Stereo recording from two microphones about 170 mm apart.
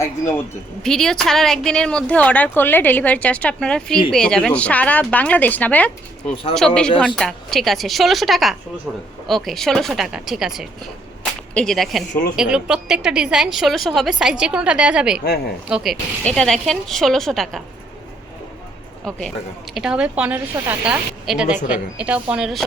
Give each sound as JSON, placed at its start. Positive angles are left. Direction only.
{"t": 0.0, "sound": "speech", "side_deg": 15}
{"t": 0.8, "sound": "a woman's voice", "side_deg": 5}
{"t": 6.2, "sound": "speech", "side_deg": 35}
{"t": 7.2, "sound": "a woman's voice", "side_deg": 0}
{"t": 19.1, "sound": "a woman's voice", "side_deg": 5}